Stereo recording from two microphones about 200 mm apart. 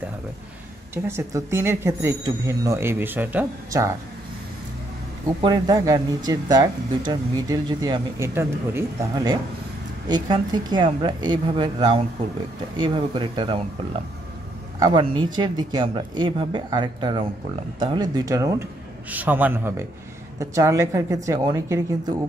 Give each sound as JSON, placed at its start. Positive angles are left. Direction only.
{"t": 0.9, "sound": "speech", "side_deg": -10}
{"t": 5.4, "sound": "speech", "side_deg": -20}
{"t": 14.8, "sound": "speech", "side_deg": -25}